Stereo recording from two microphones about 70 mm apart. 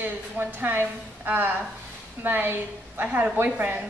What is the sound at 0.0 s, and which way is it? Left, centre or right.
A woman's voice, right.